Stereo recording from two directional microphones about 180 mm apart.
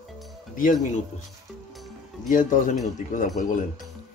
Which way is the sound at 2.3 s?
45° left (ahead or behind).